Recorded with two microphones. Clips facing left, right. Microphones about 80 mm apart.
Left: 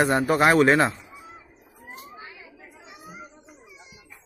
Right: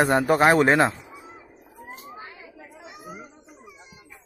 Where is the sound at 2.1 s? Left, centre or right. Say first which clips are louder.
Right 2 dB; right.